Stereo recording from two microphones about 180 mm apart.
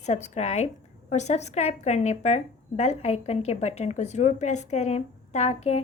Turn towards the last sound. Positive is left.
turn(degrees=35)  # may be behind; listen again after turning